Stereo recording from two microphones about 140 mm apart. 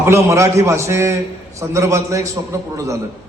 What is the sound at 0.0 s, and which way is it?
A man's voice, 20° right (ahead or behind).